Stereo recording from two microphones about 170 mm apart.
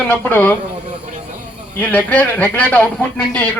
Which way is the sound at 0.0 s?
10° left (ahead or behind).